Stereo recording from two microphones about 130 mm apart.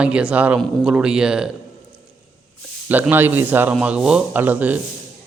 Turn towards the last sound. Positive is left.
turn(degrees=-15)  # may be behind; listen again after turning